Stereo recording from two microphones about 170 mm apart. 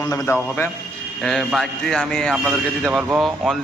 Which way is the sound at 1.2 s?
Centre (ahead or behind).